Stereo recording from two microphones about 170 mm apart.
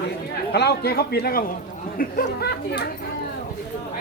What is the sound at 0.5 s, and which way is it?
A man's voice, 75° left (ahead or behind).